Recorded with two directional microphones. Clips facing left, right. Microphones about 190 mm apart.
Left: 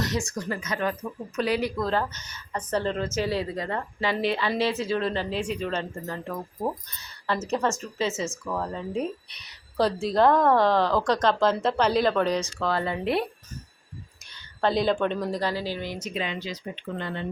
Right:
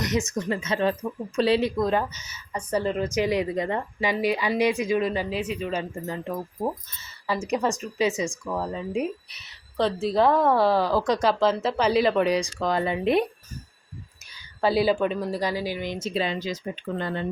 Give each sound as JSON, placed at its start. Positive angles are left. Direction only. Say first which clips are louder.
{"t": 0.0, "sound": "a woman's voice", "louder": "right 3 dB", "side_deg": -20}
{"t": 5.9, "sound": "a woman's voice", "louder": "right 3 dB", "side_deg": -20}
{"t": 6.6, "sound": "a woman's voice", "louder": "right 1 dB", "side_deg": -5}
{"t": 14.3, "sound": "a woman's voice", "louder": "right 1 dB", "side_deg": -10}